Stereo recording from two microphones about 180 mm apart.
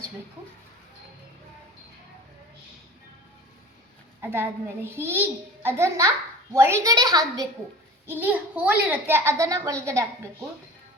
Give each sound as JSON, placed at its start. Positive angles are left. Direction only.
{"t": 4.2, "sound": "a child's voice", "side_deg": -10}
{"t": 8.0, "sound": "a child's voice", "side_deg": -10}